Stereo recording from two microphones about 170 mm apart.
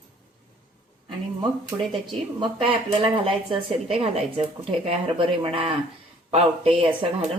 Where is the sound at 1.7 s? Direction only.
20° right (ahead or behind).